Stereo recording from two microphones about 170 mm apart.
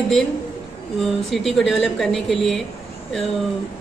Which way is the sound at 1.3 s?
Centre (ahead or behind).